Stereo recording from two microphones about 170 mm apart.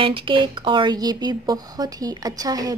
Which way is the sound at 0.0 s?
30° right (ahead or behind).